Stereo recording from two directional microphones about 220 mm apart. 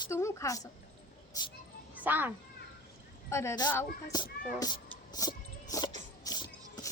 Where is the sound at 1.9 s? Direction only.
10° right (ahead or behind).